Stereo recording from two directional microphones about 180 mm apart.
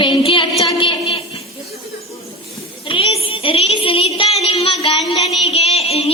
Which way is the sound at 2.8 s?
30° left (ahead or behind).